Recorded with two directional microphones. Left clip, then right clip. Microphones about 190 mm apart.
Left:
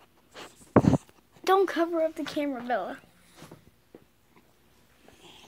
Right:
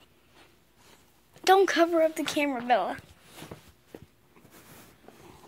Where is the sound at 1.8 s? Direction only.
Centre (ahead or behind).